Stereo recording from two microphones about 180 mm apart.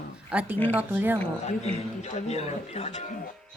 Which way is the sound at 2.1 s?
40° left (ahead or behind).